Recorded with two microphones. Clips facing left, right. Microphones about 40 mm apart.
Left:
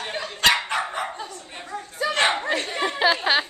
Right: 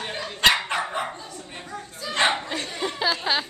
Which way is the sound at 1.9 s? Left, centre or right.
Left.